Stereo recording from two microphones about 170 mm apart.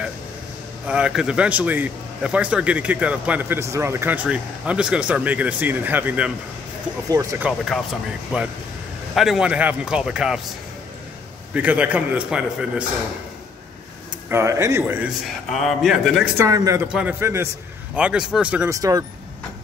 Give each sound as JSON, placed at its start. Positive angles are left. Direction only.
{"t": 0.8, "sound": "a man's voice", "side_deg": -5}
{"t": 7.3, "sound": "a man's voice", "side_deg": -5}
{"t": 11.5, "sound": "a man's voice", "side_deg": -10}
{"t": 14.3, "sound": "a man's voice", "side_deg": -20}
{"t": 15.5, "sound": "speech", "side_deg": 0}
{"t": 16.3, "sound": "speech", "side_deg": -20}
{"t": 16.8, "sound": "a man's voice", "side_deg": -5}
{"t": 18.8, "sound": "speech", "side_deg": -20}